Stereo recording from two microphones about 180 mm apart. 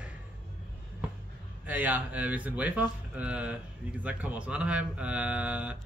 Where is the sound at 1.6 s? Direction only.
10° right (ahead or behind).